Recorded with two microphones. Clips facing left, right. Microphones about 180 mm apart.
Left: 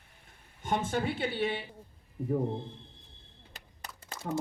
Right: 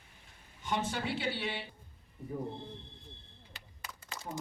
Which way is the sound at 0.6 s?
50° left (ahead or behind).